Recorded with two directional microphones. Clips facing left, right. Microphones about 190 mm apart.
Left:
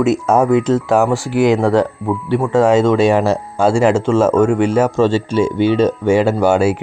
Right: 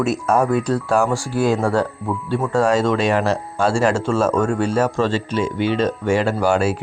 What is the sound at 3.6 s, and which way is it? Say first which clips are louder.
Speech: left 5 dB; 20° left (ahead or behind).